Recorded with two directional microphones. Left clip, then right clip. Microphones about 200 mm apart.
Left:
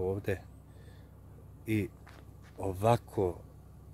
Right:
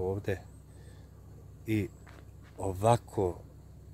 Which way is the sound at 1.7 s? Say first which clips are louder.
Right 1 dB; centre (ahead or behind).